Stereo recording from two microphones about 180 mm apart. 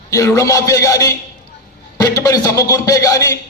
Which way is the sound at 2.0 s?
20° left (ahead or behind).